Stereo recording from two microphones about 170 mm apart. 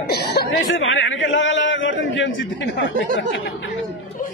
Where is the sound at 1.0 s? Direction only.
90° left.